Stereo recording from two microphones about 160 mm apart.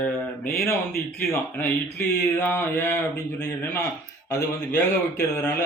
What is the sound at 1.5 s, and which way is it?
Speech, 15° left (ahead or behind).